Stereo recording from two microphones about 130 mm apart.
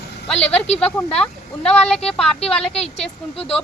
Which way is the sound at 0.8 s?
10° left (ahead or behind).